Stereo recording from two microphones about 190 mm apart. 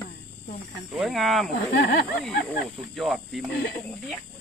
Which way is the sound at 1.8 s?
55° left (ahead or behind).